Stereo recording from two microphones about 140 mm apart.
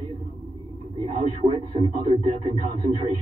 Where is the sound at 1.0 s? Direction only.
45° right (ahead or behind).